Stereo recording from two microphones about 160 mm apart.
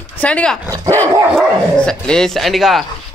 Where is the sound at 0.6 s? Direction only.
25° right (ahead or behind).